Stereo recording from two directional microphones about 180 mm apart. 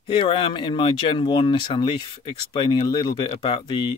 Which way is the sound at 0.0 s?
30° left (ahead or behind).